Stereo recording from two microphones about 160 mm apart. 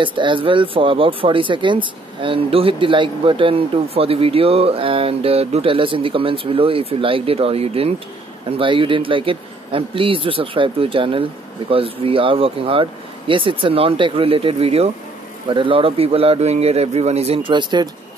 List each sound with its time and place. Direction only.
0.0 s speech: 30° right (ahead or behind)